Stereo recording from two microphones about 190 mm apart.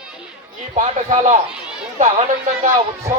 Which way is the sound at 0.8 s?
35° right (ahead or behind).